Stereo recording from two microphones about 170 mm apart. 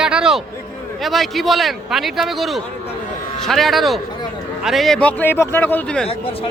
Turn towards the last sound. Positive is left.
turn(degrees=10)  # may be behind; listen again after turning